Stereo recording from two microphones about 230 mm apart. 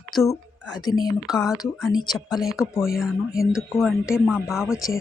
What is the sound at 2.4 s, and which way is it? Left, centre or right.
Speech, centre.